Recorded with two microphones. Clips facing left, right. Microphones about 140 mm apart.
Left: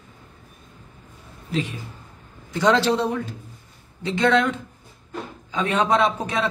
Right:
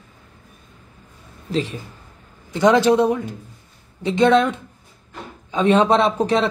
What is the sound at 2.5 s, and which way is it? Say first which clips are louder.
A man's voice: right 4 dB; 20° right (ahead or behind).